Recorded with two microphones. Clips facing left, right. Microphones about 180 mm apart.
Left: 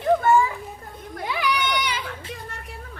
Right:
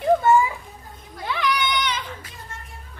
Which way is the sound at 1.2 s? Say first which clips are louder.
Right 1 dB; 10° left (ahead or behind).